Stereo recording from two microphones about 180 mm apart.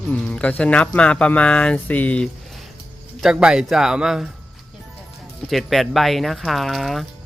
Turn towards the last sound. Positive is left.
turn(degrees=0)  # may be behind; listen again after turning